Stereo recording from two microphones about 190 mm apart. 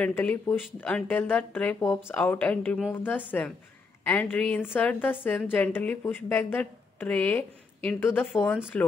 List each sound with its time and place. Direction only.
0.0 s a woman's voice: 10° left (ahead or behind)